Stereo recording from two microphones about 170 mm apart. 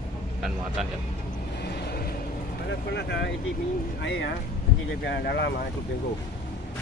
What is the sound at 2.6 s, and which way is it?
Speech, 90° left.